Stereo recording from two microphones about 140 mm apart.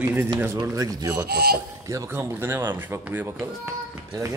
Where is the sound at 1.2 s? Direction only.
90° right.